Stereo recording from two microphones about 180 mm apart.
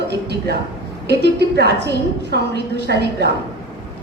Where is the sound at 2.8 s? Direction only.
65° right (ahead or behind).